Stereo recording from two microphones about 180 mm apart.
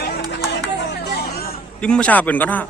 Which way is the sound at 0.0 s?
70° left (ahead or behind).